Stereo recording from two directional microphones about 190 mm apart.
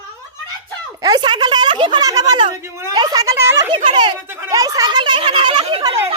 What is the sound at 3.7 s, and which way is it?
Speech, 25° right (ahead or behind).